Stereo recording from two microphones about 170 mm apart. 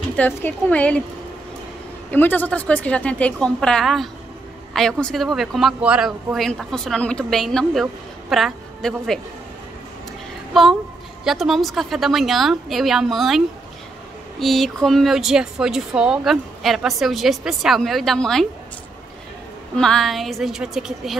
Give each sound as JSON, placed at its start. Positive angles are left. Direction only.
{"t": 0.1, "sound": "a woman's voice", "side_deg": 10}
{"t": 2.0, "sound": "a woman's voice", "side_deg": 10}
{"t": 10.5, "sound": "a woman's voice", "side_deg": 0}
{"t": 14.4, "sound": "speech", "side_deg": 0}
{"t": 19.7, "sound": "speech", "side_deg": 5}